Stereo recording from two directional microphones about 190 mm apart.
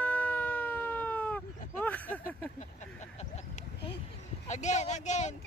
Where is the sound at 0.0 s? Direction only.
10° left (ahead or behind).